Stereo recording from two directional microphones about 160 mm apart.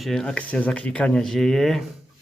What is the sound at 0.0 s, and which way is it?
Speech, 5° left (ahead or behind).